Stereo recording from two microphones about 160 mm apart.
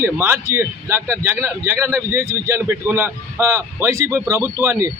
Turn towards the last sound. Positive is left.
turn(degrees=-15)  # may be behind; listen again after turning